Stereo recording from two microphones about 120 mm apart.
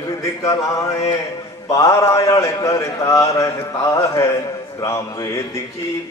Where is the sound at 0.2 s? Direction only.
25° left (ahead or behind).